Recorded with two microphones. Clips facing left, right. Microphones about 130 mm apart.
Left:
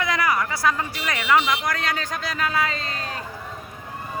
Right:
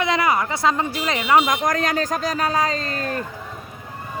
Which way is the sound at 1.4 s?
40° right (ahead or behind).